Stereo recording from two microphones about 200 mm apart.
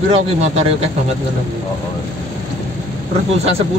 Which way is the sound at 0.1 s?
30° right (ahead or behind).